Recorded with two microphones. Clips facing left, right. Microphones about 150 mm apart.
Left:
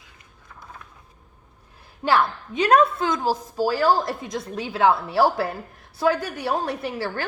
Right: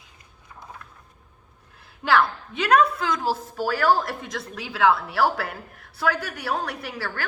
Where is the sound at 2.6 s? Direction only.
25° left (ahead or behind).